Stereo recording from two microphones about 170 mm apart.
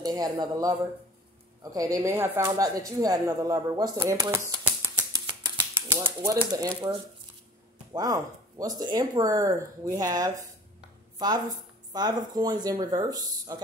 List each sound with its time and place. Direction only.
0.0 s speech: 25° right (ahead or behind)
5.1 s a sound: 25° right (ahead or behind)
6.4 s speech: 20° right (ahead or behind)
7.9 s speech: 20° right (ahead or behind)